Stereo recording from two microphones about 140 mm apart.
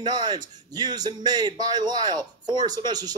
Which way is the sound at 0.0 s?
30° right (ahead or behind).